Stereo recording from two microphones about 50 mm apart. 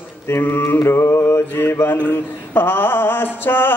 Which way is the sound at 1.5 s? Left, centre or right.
Left.